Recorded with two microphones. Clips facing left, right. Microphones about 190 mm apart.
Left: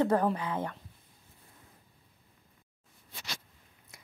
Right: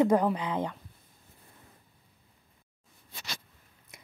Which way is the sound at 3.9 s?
20° right (ahead or behind).